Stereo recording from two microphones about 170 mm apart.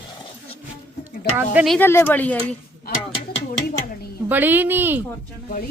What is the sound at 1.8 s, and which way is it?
Speech, 10° left (ahead or behind).